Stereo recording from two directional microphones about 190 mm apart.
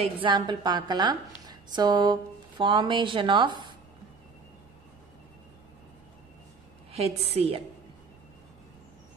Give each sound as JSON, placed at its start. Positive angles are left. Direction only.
{"t": 0.0, "sound": "a woman's voice", "side_deg": -25}
{"t": 6.9, "sound": "a woman's voice", "side_deg": -30}